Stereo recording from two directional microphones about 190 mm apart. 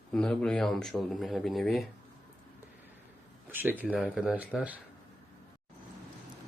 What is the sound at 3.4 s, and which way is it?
Speech, 10° right (ahead or behind).